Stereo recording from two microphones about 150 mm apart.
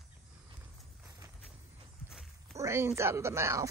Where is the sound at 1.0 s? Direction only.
20° right (ahead or behind).